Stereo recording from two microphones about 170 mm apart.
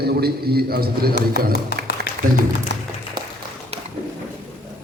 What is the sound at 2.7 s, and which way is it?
Music, 90° left.